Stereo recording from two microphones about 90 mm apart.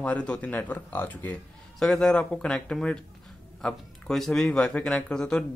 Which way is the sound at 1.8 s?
5° left (ahead or behind).